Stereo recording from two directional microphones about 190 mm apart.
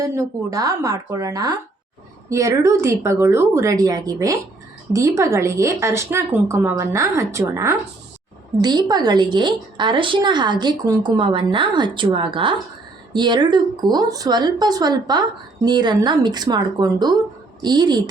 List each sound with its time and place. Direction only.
0.0 s speech: 15° right (ahead or behind)